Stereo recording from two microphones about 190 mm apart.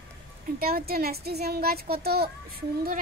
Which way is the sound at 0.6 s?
50° right (ahead or behind).